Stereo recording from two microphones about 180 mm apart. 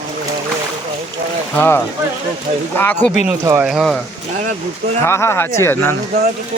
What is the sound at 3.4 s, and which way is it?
Speech, 15° right (ahead or behind).